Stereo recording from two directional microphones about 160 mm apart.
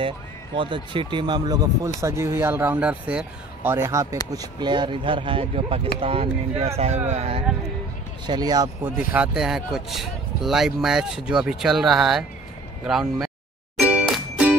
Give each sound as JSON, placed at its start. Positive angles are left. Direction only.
{"t": 0.6, "sound": "speech", "side_deg": -30}
{"t": 8.3, "sound": "speech", "side_deg": -25}
{"t": 8.8, "sound": "speech", "side_deg": -10}
{"t": 13.8, "sound": "music", "side_deg": -5}